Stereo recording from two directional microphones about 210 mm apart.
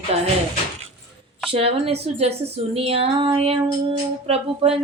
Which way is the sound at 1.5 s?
25° right (ahead or behind).